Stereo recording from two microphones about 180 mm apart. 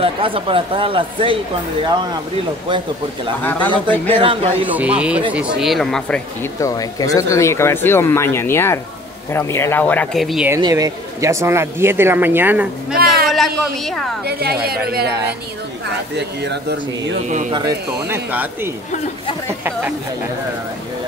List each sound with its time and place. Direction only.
0.0 s speech: 30° right (ahead or behind)
4.1 s speech: 30° right (ahead or behind)
4.6 s speech: 10° right (ahead or behind)
6.6 s speech: 20° left (ahead or behind); by 10.5 s centre (ahead or behind)
10.5 s speech: 20° right (ahead or behind)
12.9 s a sound: 55° right (ahead or behind)
13.3 s speech: centre (ahead or behind)
14.2 s a woman's voice: 60° right (ahead or behind)
15.0 s speech: 15° right (ahead or behind)
16.2 s speech: 70° right (ahead or behind)
17.5 s speech: 20° right (ahead or behind)